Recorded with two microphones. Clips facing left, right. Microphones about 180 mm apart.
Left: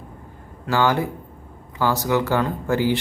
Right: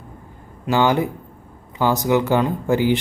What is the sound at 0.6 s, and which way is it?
Speech, 20° right (ahead or behind).